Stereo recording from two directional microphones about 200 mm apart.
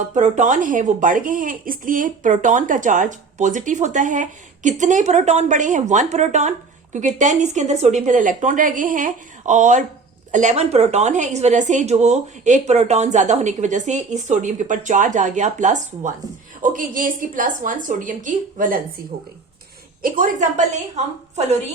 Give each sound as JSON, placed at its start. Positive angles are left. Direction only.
{"t": 0.1, "sound": "a woman's voice", "side_deg": -35}
{"t": 20.0, "sound": "a woman's voice", "side_deg": -45}